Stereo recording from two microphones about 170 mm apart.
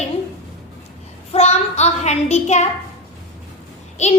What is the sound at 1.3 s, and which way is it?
Child singing, 40° left (ahead or behind).